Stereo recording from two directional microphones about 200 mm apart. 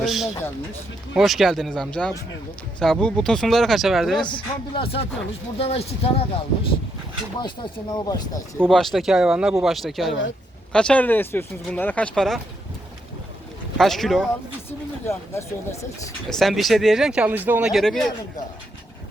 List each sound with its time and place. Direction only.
0.0 s speech: centre (ahead or behind)
4.3 s speech: 25° left (ahead or behind)
8.6 s speech: centre (ahead or behind)
13.7 s speech: centre (ahead or behind)
14.7 s speech: 10° left (ahead or behind)
16.3 s speech: centre (ahead or behind)